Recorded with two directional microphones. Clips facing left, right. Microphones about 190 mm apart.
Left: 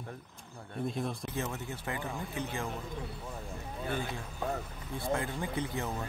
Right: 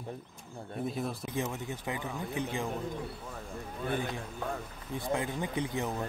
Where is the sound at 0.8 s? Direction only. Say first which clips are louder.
Even; 5° right (ahead or behind).